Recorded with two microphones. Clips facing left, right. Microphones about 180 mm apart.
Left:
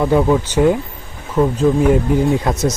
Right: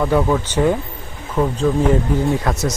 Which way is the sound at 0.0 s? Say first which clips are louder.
Left 3 dB; 15° left (ahead or behind).